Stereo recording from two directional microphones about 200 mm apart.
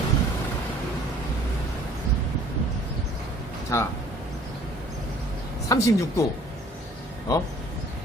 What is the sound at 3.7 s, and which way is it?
Speech, 15° left (ahead or behind).